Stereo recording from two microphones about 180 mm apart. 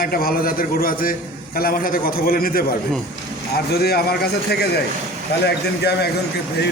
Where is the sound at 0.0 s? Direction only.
55° left (ahead or behind).